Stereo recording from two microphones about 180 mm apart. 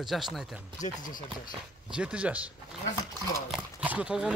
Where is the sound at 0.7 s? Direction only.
45° left (ahead or behind).